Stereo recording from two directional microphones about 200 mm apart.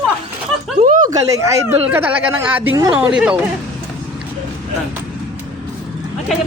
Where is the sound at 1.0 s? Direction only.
15° right (ahead or behind).